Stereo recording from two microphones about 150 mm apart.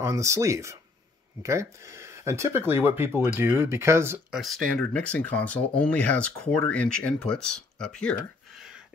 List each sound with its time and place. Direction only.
0.0 s speech: 20° right (ahead or behind)
4.3 s speech: centre (ahead or behind)